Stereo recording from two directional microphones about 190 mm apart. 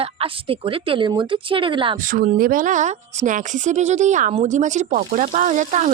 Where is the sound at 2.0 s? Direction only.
50° right (ahead or behind).